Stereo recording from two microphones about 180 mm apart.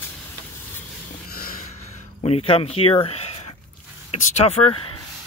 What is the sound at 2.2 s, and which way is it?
Speech, 35° left (ahead or behind).